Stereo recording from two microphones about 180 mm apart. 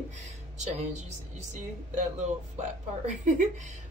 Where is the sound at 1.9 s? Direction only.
40° right (ahead or behind).